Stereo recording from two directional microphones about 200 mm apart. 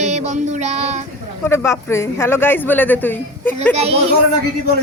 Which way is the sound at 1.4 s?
10° left (ahead or behind).